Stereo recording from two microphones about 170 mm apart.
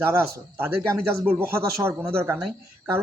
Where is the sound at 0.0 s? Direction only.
15° right (ahead or behind).